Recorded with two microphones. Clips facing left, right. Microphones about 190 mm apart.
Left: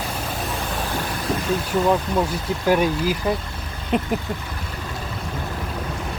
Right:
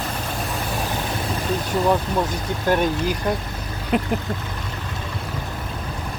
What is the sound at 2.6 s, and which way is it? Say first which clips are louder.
Speech: left 1 dB; 5° left (ahead or behind).